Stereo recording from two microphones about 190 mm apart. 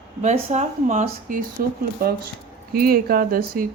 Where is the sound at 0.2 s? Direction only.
35° right (ahead or behind).